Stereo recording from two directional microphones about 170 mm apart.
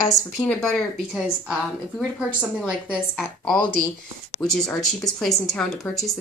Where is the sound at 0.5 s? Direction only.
5° left (ahead or behind).